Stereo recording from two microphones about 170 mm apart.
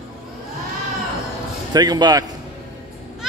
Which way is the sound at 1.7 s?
25° right (ahead or behind).